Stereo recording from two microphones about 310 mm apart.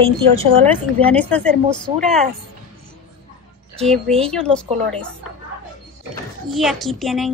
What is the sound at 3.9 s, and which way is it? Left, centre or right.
Speech, centre.